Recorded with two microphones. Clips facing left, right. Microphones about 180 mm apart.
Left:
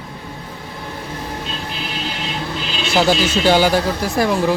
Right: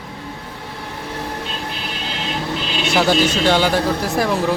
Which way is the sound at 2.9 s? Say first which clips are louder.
Even; centre (ahead or behind).